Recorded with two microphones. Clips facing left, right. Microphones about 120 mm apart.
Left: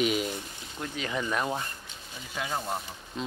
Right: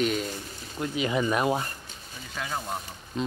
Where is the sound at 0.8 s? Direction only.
10° right (ahead or behind).